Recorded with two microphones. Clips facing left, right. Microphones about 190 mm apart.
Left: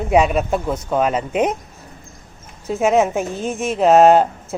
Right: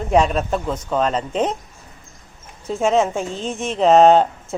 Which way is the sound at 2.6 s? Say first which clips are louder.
Left 2 dB; 5° left (ahead or behind).